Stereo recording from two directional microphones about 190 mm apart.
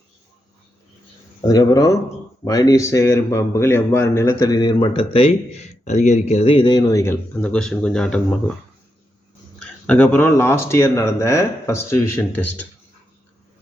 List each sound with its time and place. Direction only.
1.5 s a man's voice: 20° left (ahead or behind)
9.6 s a man's voice: 5° left (ahead or behind)